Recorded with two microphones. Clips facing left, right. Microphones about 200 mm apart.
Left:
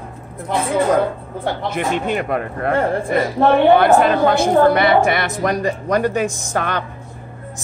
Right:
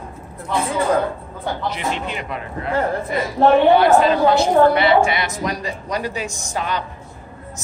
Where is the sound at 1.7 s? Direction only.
50° left (ahead or behind).